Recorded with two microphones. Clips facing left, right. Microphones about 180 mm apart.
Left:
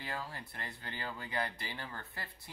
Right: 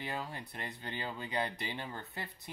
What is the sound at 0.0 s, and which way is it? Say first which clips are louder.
Speech: right 2 dB; 20° right (ahead or behind).